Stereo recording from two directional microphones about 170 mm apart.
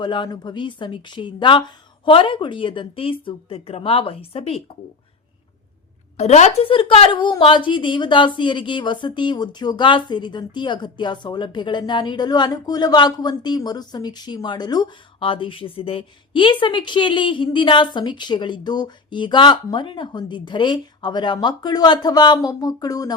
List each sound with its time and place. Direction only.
0.0 s a woman's voice: 25° left (ahead or behind)
6.1 s a woman's voice: 40° left (ahead or behind); by 23.1 s 20° left (ahead or behind)